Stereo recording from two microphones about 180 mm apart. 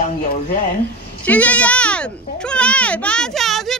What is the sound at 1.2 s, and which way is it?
A child's voice, 10° left (ahead or behind).